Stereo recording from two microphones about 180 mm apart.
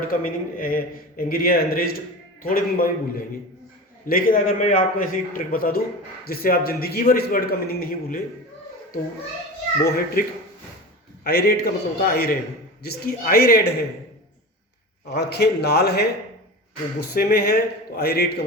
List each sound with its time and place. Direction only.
0.1 s a man's voice: 50° left (ahead or behind)
9.8 s a man's voice: 60° left (ahead or behind)
15.1 s a man's voice: 65° left (ahead or behind)